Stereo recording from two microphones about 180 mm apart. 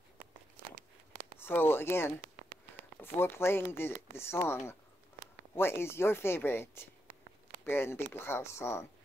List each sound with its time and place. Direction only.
1.4 s speech: 10° left (ahead or behind)
2.2 s a sound: 50° right (ahead or behind)
3.0 s speech: 15° left (ahead or behind)